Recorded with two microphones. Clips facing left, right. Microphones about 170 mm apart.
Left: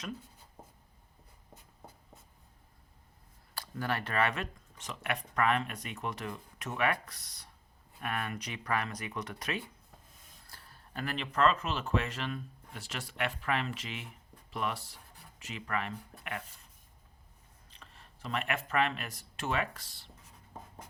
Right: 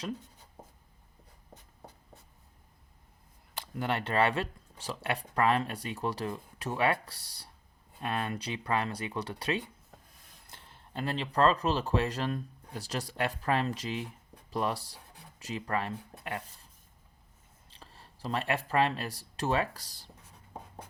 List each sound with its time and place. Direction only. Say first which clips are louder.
3.5 s speech: right 2 dB; 20° right (ahead or behind)
17.7 s speech: right 3 dB; 35° right (ahead or behind)